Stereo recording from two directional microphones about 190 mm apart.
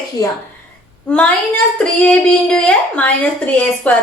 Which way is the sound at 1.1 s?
5° left (ahead or behind).